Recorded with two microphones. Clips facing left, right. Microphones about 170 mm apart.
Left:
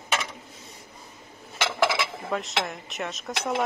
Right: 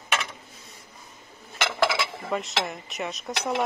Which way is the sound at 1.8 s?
Centre (ahead or behind).